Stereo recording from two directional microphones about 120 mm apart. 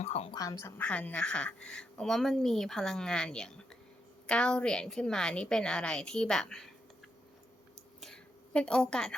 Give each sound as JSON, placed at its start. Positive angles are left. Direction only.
{"t": 0.0, "sound": "speech", "side_deg": 60}
{"t": 0.3, "sound": "a woman's voice", "side_deg": 30}
{"t": 0.8, "sound": "a woman's voice", "side_deg": 10}
{"t": 8.0, "sound": "a sound", "side_deg": 5}